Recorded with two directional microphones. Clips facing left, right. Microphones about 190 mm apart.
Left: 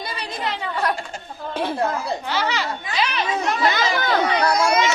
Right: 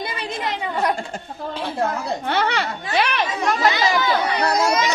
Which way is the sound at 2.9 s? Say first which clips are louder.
Right 4 dB; 60° right (ahead or behind).